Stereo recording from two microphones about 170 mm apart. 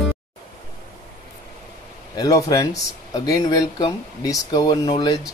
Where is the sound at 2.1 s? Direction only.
20° left (ahead or behind).